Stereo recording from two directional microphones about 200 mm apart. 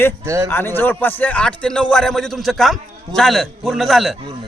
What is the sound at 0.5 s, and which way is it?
A man's voice, 10° left (ahead or behind).